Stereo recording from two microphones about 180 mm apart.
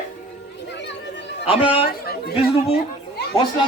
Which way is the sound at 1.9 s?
60° left (ahead or behind).